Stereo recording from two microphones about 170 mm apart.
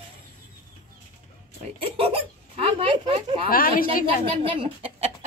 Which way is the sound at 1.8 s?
35° right (ahead or behind).